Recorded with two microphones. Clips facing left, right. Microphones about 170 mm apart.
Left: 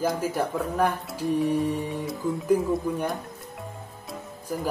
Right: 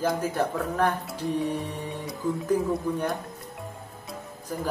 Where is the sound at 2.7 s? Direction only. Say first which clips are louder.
Left 1 dB; centre (ahead or behind).